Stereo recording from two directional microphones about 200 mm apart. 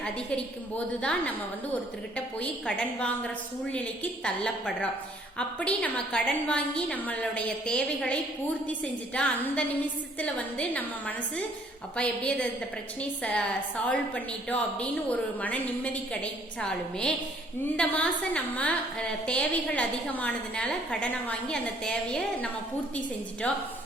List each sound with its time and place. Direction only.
0.0 s a woman's voice: 5° left (ahead or behind)
2.1 s a woman's voice: 5° left (ahead or behind)